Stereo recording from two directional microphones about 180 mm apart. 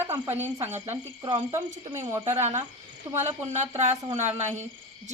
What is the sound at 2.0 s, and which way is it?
Speech, 15° right (ahead or behind).